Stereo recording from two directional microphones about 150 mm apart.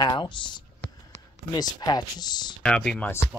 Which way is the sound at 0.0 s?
30° left (ahead or behind).